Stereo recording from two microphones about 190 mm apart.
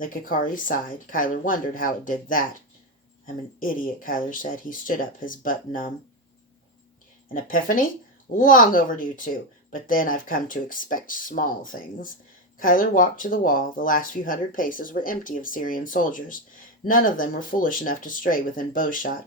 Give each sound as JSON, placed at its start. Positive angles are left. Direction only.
{"t": 0.0, "sound": "speech", "side_deg": 45}
{"t": 3.6, "sound": "speech", "side_deg": 45}
{"t": 7.3, "sound": "speech", "side_deg": 45}